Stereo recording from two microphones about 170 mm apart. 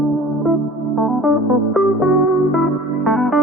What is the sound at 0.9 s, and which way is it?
Music, centre (ahead or behind).